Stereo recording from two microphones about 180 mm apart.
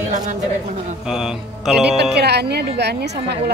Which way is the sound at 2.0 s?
65° right (ahead or behind).